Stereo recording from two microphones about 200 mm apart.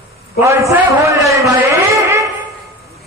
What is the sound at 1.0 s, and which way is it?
Speech, 15° right (ahead or behind).